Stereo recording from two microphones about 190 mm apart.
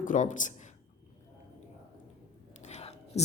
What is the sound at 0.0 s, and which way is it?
Speech, 40° left (ahead or behind).